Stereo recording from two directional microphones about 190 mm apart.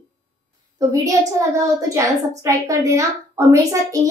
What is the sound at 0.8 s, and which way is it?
A child's voice, 15° right (ahead or behind).